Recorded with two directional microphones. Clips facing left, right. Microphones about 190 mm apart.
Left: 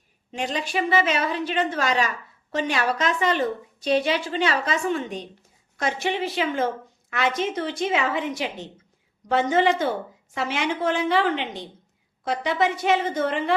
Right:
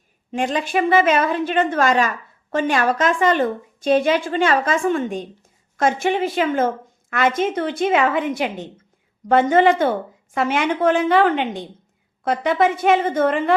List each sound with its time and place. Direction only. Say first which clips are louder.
0.3 s a woman's voice: right 6 dB; 50° right (ahead or behind)